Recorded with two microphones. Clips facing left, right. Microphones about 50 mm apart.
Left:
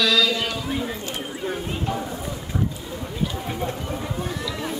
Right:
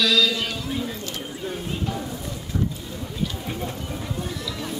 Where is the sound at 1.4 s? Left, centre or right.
Centre.